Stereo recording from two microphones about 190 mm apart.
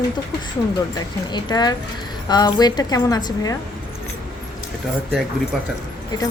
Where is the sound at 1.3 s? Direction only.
20° left (ahead or behind).